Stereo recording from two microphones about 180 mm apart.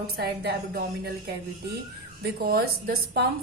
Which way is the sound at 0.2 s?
60° right (ahead or behind).